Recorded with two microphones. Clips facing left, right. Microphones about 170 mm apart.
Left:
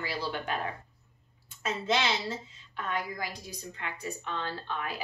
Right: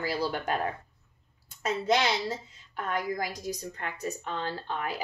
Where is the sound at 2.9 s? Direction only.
45° right (ahead or behind).